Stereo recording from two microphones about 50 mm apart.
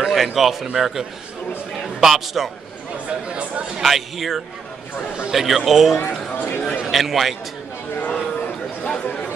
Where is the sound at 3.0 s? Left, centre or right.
Right.